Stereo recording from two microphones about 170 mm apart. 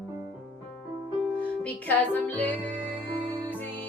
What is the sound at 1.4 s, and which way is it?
Music, 10° left (ahead or behind).